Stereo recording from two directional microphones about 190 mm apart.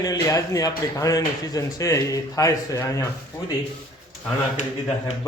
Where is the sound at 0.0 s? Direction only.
20° left (ahead or behind).